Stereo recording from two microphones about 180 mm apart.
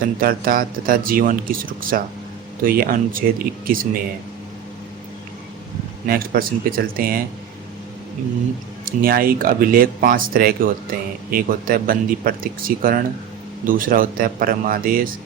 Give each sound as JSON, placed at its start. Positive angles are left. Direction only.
{"t": 0.0, "sound": "speech", "side_deg": -55}
{"t": 6.1, "sound": "speech", "side_deg": -50}
{"t": 8.8, "sound": "speech", "side_deg": -55}